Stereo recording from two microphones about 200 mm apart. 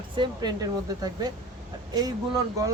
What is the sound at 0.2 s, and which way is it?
Speech, 20° right (ahead or behind).